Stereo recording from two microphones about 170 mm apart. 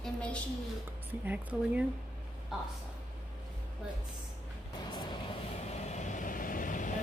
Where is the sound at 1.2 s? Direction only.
10° right (ahead or behind).